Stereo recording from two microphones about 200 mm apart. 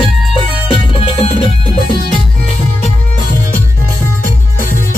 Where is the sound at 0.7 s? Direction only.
25° left (ahead or behind).